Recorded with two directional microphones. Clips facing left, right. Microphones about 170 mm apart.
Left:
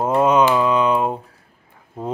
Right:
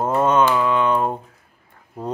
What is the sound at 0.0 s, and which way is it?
Mantra, 10° left (ahead or behind).